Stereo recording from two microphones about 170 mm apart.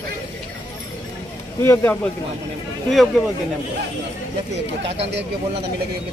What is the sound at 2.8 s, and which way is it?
Speech, centre (ahead or behind).